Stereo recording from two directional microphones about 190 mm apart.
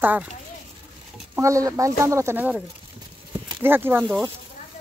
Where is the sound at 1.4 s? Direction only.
15° right (ahead or behind).